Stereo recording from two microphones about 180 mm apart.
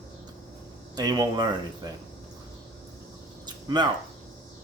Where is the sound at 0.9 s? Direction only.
20° right (ahead or behind).